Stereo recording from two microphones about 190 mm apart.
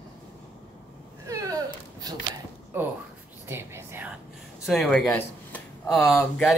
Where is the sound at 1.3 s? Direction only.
20° right (ahead or behind).